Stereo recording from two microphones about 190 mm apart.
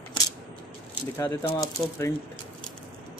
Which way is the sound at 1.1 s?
10° left (ahead or behind).